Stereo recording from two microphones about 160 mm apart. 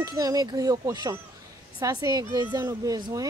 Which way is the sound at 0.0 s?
20° right (ahead or behind).